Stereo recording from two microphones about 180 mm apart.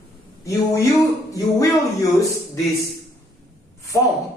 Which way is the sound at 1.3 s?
20° left (ahead or behind).